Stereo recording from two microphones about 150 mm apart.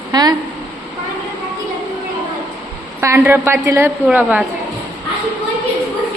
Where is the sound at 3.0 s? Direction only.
15° right (ahead or behind).